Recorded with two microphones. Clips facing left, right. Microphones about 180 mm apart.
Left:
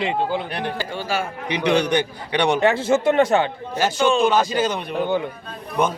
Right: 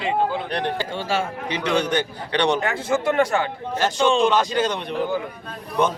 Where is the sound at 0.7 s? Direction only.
25° right (ahead or behind).